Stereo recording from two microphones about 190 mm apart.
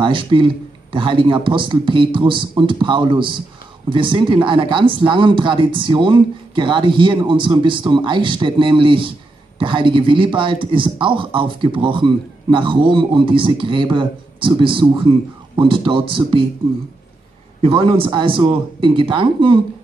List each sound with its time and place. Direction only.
0.0 s a man's voice: 25° right (ahead or behind)
17.6 s a man's voice: 30° right (ahead or behind)